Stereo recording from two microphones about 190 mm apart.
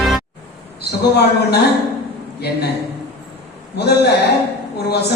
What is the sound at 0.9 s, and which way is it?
Speech, 60° left (ahead or behind).